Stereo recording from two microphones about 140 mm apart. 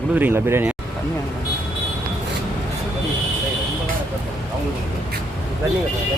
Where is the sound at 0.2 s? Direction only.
15° right (ahead or behind).